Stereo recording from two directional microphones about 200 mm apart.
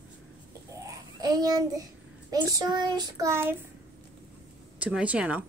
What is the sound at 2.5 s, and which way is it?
Child singing, 20° right (ahead or behind).